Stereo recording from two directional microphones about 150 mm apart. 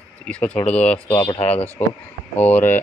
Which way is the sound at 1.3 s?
45° left (ahead or behind).